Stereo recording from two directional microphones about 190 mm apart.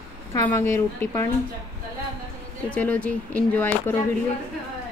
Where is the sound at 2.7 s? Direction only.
10° left (ahead or behind).